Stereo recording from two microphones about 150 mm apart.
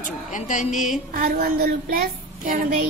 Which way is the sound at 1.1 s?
75° right (ahead or behind).